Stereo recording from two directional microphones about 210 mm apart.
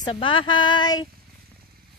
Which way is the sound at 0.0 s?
25° left (ahead or behind).